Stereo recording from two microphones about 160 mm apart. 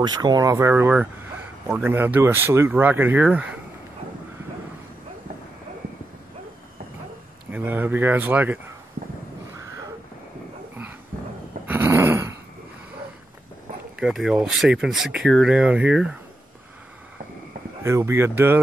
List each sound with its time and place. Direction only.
0.0 s speech: 25° right (ahead or behind); by 3.5 s 10° right (ahead or behind)
7.5 s speech: 10° right (ahead or behind)
11.6 s a sound: 10° right (ahead or behind)
13.9 s speech: centre (ahead or behind)
17.8 s speech: 15° right (ahead or behind)